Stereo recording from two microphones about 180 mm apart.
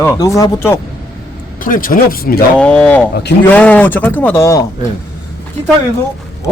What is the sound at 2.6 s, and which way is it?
A man's voice, 5° left (ahead or behind).